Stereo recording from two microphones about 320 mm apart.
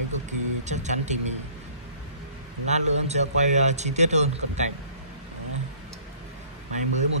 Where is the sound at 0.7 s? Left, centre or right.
Right.